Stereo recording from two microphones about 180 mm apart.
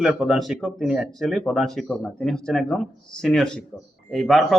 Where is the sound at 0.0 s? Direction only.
Centre (ahead or behind).